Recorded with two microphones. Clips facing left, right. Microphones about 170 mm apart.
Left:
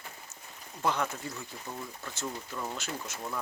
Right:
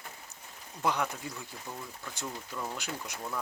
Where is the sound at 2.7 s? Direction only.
15° right (ahead or behind).